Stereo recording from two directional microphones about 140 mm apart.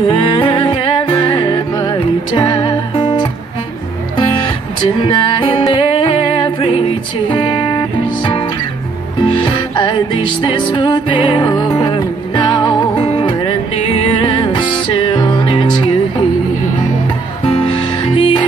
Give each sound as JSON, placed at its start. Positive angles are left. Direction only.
{"t": 0.1, "sound": "music", "side_deg": 40}
{"t": 5.0, "sound": "music", "side_deg": 35}
{"t": 9.2, "sound": "music", "side_deg": 35}
{"t": 17.5, "sound": "music", "side_deg": 35}